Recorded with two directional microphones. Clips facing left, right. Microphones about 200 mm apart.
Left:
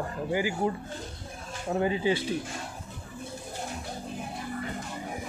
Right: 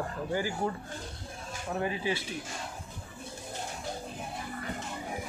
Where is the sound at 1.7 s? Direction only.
25° left (ahead or behind).